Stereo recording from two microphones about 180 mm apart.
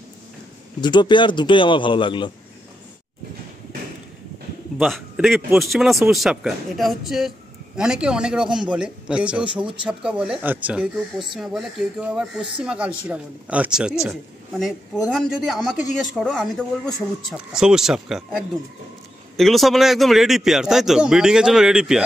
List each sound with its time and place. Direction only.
0.7 s a man's voice: 25° left (ahead or behind)
4.7 s a man's voice: centre (ahead or behind)
19.3 s speech: centre (ahead or behind)